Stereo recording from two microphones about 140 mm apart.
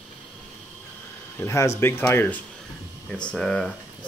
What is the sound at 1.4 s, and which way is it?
Speech, 20° left (ahead or behind).